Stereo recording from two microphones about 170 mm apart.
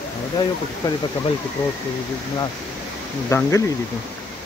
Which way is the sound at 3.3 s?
20° left (ahead or behind).